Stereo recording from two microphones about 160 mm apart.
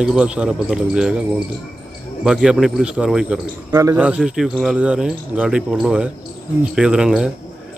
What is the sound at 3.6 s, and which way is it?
Speech, 20° right (ahead or behind).